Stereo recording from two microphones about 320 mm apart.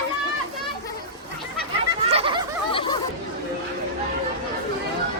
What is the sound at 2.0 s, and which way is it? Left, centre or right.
Snicker, centre.